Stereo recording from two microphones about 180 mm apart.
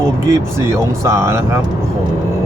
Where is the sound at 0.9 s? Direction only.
15° right (ahead or behind).